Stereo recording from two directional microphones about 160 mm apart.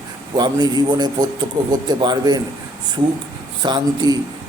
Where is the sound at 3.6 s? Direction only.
25° right (ahead or behind).